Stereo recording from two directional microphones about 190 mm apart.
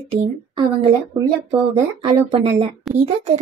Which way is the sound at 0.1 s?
30° right (ahead or behind).